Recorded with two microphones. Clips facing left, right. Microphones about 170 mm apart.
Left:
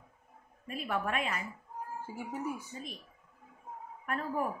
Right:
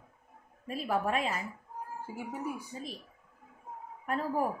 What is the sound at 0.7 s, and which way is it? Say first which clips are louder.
Speech: right 3 dB; 35° right (ahead or behind).